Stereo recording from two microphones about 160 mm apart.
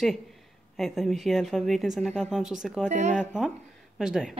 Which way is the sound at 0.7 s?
Centre (ahead or behind).